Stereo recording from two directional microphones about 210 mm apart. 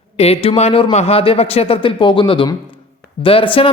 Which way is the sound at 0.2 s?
30° left (ahead or behind).